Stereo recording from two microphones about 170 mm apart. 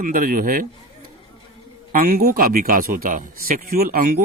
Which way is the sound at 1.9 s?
60° right (ahead or behind).